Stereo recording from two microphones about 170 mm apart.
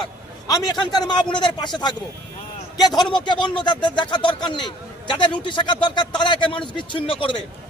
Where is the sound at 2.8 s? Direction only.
25° left (ahead or behind).